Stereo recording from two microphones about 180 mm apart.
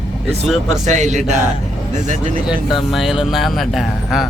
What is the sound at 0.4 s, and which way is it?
Speech, centre (ahead or behind).